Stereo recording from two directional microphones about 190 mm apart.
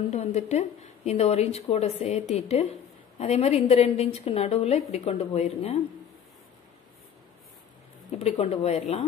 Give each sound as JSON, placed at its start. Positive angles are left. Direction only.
{"t": 0.1, "sound": "a woman's voice", "side_deg": 35}
{"t": 8.2, "sound": "a woman's voice", "side_deg": 35}